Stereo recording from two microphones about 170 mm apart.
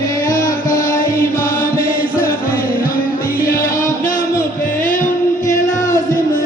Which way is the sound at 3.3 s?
60° left (ahead or behind).